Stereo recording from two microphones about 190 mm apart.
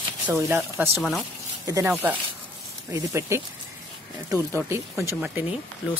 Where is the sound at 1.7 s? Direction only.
10° right (ahead or behind).